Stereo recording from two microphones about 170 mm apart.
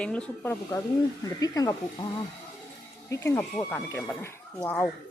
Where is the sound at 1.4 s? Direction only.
20° left (ahead or behind).